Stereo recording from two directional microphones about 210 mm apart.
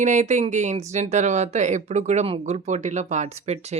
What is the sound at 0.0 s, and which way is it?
Speech, 35° right (ahead or behind).